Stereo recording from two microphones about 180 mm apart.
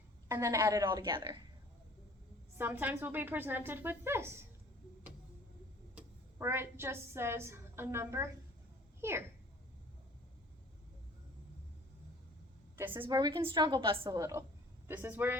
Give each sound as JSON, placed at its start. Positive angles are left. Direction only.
{"t": 0.3, "sound": "a woman's voice", "side_deg": -15}
{"t": 2.6, "sound": "a woman's voice", "side_deg": -10}
{"t": 5.9, "sound": "a woman's voice", "side_deg": -10}
{"t": 12.7, "sound": "a sound", "side_deg": -10}
{"t": 13.0, "sound": "a woman's voice", "side_deg": -20}
{"t": 14.2, "sound": "a woman's voice", "side_deg": -15}